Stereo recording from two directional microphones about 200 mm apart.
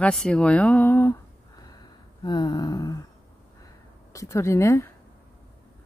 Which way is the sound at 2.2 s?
20° left (ahead or behind).